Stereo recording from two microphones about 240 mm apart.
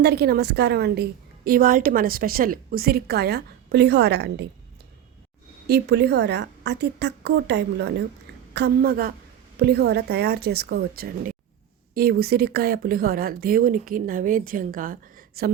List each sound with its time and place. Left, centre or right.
0.0 s speech: right
5.6 s a woman's voice: right